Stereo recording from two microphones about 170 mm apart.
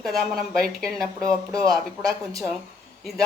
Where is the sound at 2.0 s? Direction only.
20° right (ahead or behind).